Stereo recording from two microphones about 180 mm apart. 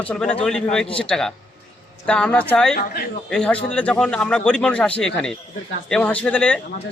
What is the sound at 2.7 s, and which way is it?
Speech, 55° left (ahead or behind).